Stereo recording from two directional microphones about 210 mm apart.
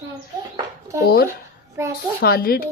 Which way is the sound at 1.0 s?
45° left (ahead or behind).